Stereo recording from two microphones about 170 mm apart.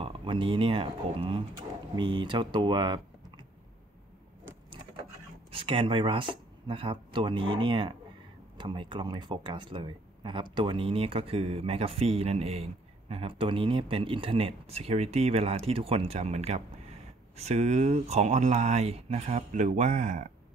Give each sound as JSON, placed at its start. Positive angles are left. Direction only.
{"t": 0.0, "sound": "speech", "side_deg": -30}
{"t": 5.5, "sound": "speech", "side_deg": -30}